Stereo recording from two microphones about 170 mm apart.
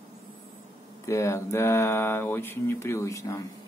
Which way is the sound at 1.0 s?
15° left (ahead or behind).